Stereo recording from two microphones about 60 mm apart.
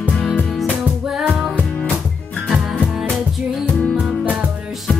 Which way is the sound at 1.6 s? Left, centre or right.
Left.